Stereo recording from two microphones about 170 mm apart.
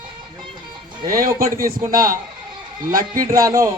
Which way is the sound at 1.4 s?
55° right (ahead or behind).